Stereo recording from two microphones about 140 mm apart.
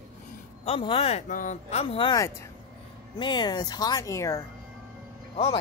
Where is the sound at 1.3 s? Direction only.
65° left (ahead or behind); by 2.1 s 40° left (ahead or behind).